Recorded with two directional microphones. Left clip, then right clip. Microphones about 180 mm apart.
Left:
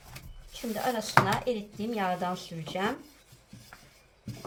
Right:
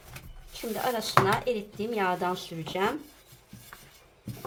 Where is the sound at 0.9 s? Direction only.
35° right (ahead or behind).